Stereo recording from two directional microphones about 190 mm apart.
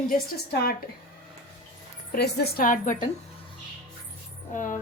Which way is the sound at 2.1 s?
55° left (ahead or behind).